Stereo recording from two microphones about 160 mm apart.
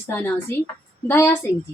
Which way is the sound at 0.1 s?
15° left (ahead or behind).